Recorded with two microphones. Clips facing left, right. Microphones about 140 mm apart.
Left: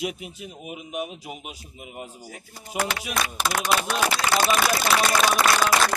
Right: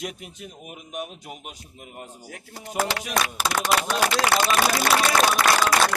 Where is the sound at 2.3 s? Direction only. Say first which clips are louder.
Right 2 dB; 70° right (ahead or behind).